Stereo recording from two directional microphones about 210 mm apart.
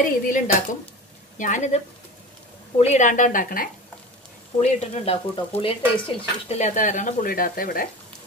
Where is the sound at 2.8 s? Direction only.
35° left (ahead or behind).